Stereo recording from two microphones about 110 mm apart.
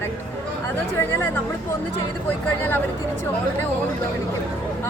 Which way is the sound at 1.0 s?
20° left (ahead or behind).